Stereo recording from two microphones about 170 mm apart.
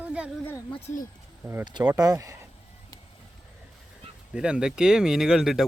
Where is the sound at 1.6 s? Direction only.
25° right (ahead or behind).